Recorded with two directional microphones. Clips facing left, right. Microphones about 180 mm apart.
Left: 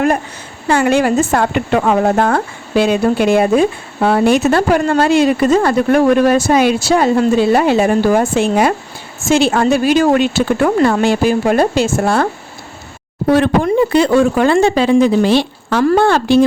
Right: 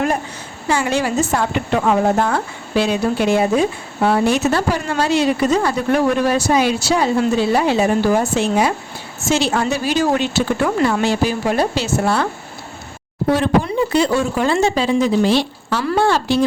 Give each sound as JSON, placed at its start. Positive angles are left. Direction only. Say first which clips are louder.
{"t": 0.7, "sound": "speech", "louder": "left 6 dB", "side_deg": 55}
{"t": 13.3, "sound": "speech", "louder": "left 5 dB", "side_deg": 60}